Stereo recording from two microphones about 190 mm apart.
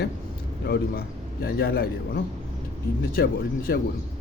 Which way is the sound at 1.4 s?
55° left (ahead or behind).